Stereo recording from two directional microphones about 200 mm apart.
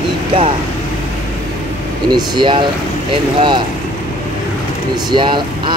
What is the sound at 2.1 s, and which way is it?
Speech, 20° right (ahead or behind).